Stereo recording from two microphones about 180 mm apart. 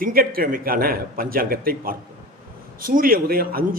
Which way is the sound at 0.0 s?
55° right (ahead or behind).